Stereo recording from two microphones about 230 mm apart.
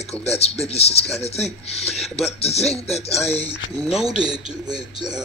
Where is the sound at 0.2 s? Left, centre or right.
Left.